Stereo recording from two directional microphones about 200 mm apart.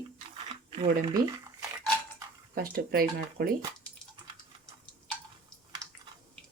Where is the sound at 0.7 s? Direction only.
30° right (ahead or behind).